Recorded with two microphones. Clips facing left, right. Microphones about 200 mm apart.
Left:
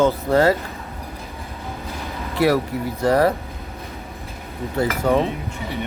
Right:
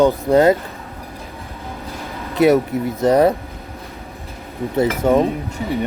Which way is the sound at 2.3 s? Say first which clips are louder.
Right 5 dB; 20° right (ahead or behind).